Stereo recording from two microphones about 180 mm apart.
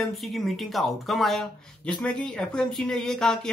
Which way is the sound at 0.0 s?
Centre (ahead or behind).